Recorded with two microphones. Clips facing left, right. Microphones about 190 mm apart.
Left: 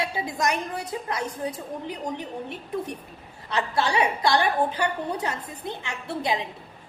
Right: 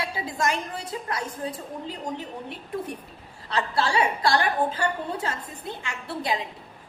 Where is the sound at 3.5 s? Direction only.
20° left (ahead or behind).